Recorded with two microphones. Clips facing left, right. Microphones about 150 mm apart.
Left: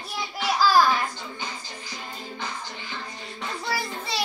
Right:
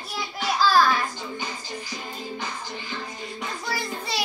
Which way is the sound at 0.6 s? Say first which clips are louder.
Even; 15° left (ahead or behind).